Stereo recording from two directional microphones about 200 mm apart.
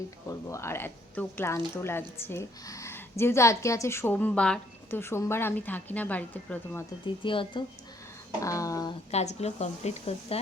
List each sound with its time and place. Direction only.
0.3 s speech: 15° left (ahead or behind)
7.2 s speech: 25° left (ahead or behind)
9.1 s speech: 30° left (ahead or behind)